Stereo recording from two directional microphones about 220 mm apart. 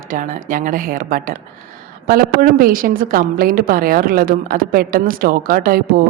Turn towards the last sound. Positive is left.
turn(degrees=-40)  # may be behind; listen again after turning